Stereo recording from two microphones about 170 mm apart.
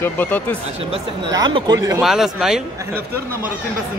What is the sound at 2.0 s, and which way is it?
Speech, centre (ahead or behind).